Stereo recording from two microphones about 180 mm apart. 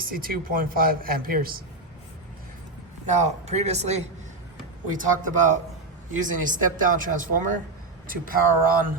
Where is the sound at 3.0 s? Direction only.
40° right (ahead or behind).